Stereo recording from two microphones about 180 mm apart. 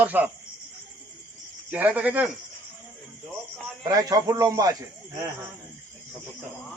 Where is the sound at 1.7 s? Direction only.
10° right (ahead or behind).